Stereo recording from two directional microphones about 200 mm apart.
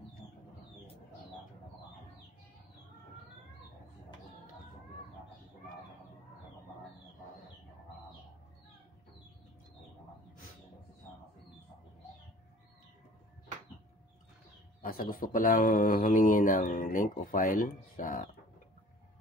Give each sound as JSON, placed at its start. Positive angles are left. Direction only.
{"t": 14.8, "sound": "speech", "side_deg": 45}